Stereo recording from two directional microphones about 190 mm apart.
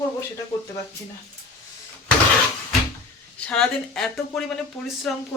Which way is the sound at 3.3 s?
5° left (ahead or behind).